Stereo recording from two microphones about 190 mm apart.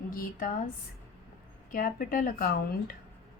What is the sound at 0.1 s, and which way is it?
Speech, 50° left (ahead or behind).